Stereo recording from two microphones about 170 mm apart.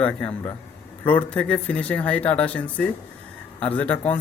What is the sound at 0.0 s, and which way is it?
Speech, 5° left (ahead or behind).